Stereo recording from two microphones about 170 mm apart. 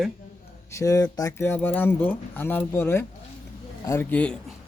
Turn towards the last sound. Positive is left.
turn(degrees=10)  # may be behind; listen again after turning